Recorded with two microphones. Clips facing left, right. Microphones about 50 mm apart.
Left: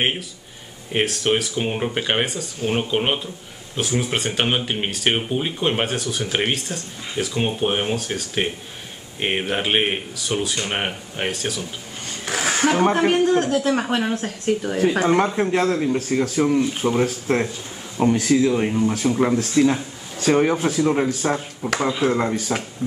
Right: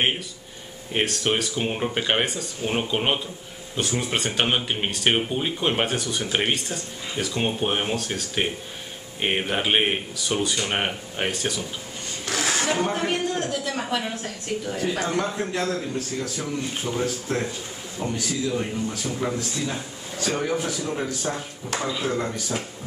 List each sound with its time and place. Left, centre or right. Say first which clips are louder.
0.9 s speech: left 3 dB; centre
12.3 s a sound: left 3 dB; left
12.6 s speech: left 11 dB; left